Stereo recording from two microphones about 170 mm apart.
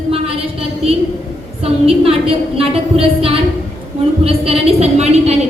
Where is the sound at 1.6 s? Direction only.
35° right (ahead or behind).